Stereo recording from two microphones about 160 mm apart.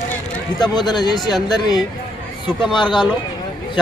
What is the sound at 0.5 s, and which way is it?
A man's voice, 25° left (ahead or behind).